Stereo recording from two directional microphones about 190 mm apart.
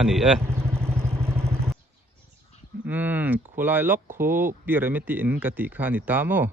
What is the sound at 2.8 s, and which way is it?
Speech, 10° right (ahead or behind).